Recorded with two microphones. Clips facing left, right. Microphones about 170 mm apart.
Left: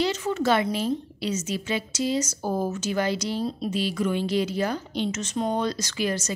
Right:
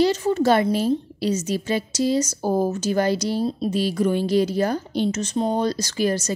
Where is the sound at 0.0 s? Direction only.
35° right (ahead or behind).